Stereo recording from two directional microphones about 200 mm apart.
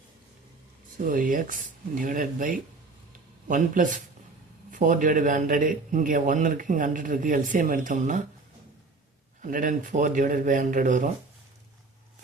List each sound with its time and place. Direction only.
1.0 s a man's voice: 40° right (ahead or behind)
9.4 s a man's voice: 40° right (ahead or behind)